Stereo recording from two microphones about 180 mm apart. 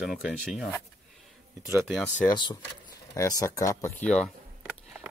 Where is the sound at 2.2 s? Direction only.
25° left (ahead or behind).